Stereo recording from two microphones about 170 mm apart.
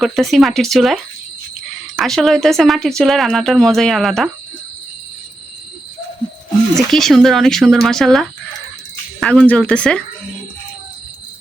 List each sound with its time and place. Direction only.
0.0 s speech: centre (ahead or behind)
2.0 s speech: centre (ahead or behind)
6.7 s speech: centre (ahead or behind)